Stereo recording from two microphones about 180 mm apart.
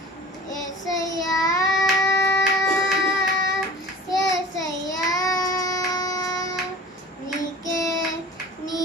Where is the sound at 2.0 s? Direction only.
15° left (ahead or behind).